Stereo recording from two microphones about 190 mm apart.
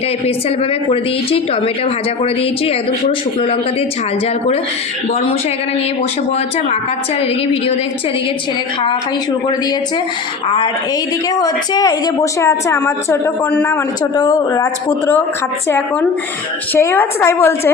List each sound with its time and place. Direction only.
0.9 s a woman's voice: 30° left (ahead or behind)
11.3 s a woman's voice: 20° left (ahead or behind)
16.7 s a woman's voice: 10° left (ahead or behind)